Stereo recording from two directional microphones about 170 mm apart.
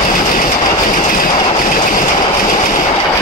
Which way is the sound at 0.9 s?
55° left (ahead or behind).